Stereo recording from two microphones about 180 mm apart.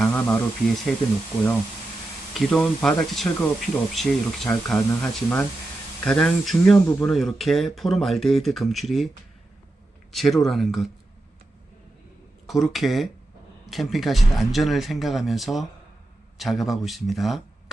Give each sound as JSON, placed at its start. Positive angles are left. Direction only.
{"t": 0.0, "sound": "speech", "side_deg": 10}
{"t": 2.4, "sound": "speech", "side_deg": 5}
{"t": 10.1, "sound": "speech", "side_deg": 0}
{"t": 12.5, "sound": "speech", "side_deg": 0}